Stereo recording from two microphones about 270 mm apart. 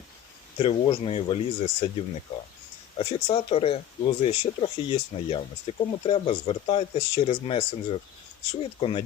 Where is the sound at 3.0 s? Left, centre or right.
Centre.